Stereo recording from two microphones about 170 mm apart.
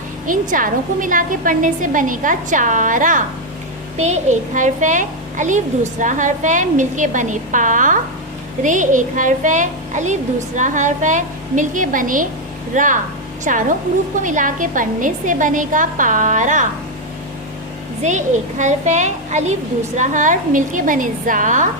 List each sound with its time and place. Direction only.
0.3 s a child's voice: 50° right (ahead or behind)
18.0 s a child's voice: 45° right (ahead or behind)